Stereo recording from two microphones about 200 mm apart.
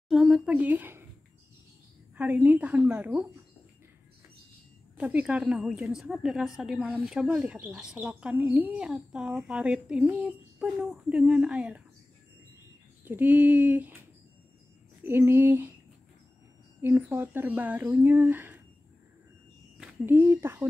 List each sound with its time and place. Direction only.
0.1 s speech: centre (ahead or behind)
2.1 s speech: 10° right (ahead or behind)
4.9 s a woman's voice: 5° right (ahead or behind)
13.0 s speech: 10° right (ahead or behind)
15.0 s speech: 10° right (ahead or behind)
16.8 s speech: 10° right (ahead or behind)
19.8 s speech: 10° right (ahead or behind)